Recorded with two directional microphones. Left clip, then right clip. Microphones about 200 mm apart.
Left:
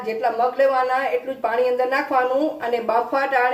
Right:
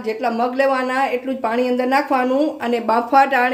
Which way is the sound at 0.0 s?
35° right (ahead or behind).